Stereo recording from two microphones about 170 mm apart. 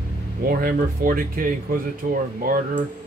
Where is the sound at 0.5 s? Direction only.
60° right (ahead or behind).